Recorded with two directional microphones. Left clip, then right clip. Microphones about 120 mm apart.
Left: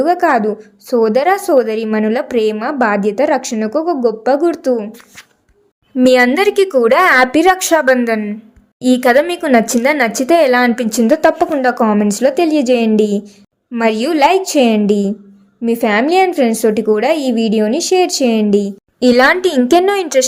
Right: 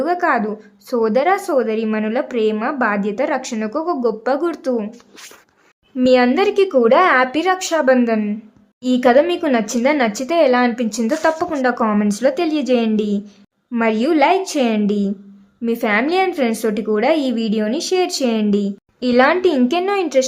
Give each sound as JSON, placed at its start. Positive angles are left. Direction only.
{"t": 0.0, "sound": "a woman's voice", "side_deg": 30}
{"t": 6.1, "sound": "speech", "side_deg": 45}
{"t": 11.0, "sound": "a woman's voice", "side_deg": 30}
{"t": 15.6, "sound": "a woman's voice", "side_deg": 25}
{"t": 18.9, "sound": "speech", "side_deg": 55}